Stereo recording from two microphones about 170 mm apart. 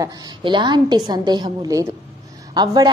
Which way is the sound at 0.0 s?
30° right (ahead or behind).